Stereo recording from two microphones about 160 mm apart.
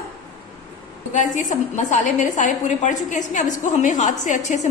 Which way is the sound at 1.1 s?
50° left (ahead or behind).